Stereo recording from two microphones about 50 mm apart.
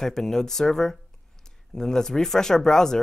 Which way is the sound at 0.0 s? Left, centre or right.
Centre.